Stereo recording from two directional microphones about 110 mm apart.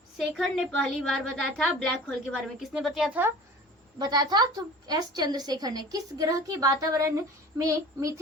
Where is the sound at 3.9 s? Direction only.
40° right (ahead or behind).